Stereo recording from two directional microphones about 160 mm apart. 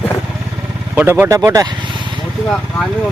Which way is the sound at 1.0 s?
15° right (ahead or behind).